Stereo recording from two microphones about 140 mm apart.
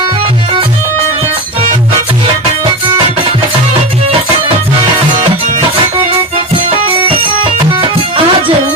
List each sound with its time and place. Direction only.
6.6 s music: 40° right (ahead or behind)